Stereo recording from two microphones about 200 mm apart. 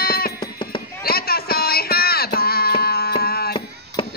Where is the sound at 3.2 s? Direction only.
50° left (ahead or behind).